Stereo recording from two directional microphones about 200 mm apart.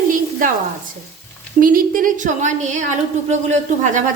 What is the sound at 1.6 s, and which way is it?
A woman's voice, 45° right (ahead or behind).